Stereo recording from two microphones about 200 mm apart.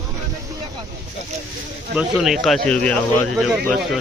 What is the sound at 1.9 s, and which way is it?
Speech, centre (ahead or behind).